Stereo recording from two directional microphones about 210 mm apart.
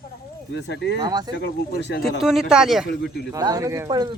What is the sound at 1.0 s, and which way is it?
Speech, 20° right (ahead or behind).